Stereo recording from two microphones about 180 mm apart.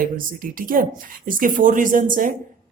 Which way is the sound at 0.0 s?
50° right (ahead or behind).